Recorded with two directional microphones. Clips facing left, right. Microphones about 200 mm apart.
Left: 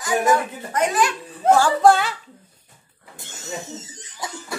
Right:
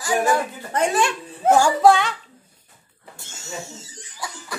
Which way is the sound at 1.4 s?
5° right (ahead or behind).